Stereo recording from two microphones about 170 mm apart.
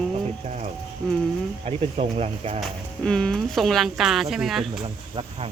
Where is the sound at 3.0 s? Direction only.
5° left (ahead or behind).